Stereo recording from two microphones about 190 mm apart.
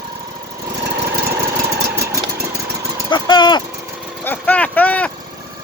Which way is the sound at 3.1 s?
25° left (ahead or behind).